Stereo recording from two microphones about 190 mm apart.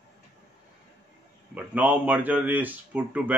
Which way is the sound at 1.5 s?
10° right (ahead or behind).